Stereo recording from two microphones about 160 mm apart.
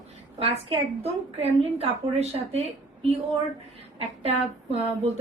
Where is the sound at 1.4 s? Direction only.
40° right (ahead or behind).